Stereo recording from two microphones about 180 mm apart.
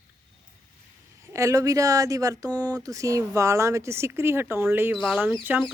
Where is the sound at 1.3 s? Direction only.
15° right (ahead or behind).